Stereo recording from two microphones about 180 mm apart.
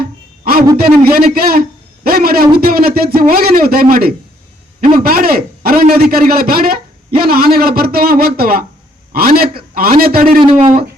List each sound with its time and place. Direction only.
0.0 s a sound: 55° right (ahead or behind)
0.8 s a man's voice: 55° right (ahead or behind)
10.4 s speech: 30° right (ahead or behind)